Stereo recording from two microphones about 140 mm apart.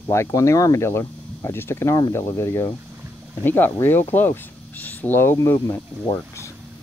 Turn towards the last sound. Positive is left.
turn(degrees=20)  # may be behind; listen again after turning